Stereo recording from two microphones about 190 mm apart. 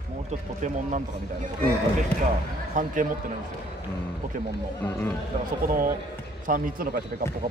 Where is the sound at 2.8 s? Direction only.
45° right (ahead or behind).